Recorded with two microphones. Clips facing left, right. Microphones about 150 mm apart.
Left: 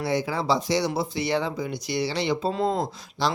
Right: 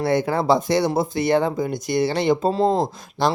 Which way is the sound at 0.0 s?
55° right (ahead or behind).